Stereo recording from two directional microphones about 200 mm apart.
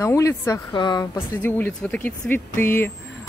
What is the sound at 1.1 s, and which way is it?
A woman's voice, 10° left (ahead or behind).